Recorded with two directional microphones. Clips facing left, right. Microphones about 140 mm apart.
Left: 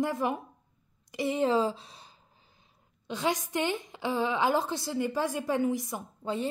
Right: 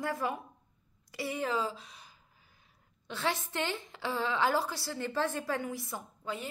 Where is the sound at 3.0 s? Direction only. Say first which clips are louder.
Left 4 dB; 15° left (ahead or behind).